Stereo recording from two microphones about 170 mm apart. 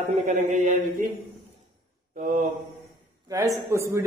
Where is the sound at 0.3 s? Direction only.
50° right (ahead or behind).